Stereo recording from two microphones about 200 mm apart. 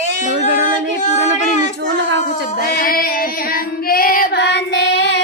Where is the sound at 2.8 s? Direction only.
45° left (ahead or behind).